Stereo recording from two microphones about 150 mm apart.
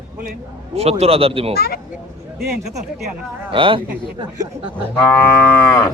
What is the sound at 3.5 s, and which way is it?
A man's voice, 35° right (ahead or behind).